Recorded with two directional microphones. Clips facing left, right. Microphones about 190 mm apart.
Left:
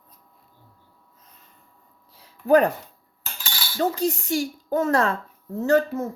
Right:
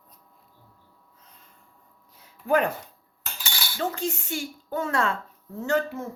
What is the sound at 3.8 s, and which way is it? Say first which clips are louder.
Speech: left 6 dB; 40° left (ahead or behind).